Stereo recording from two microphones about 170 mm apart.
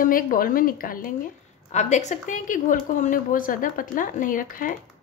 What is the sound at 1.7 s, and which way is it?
Speech, 45° left (ahead or behind).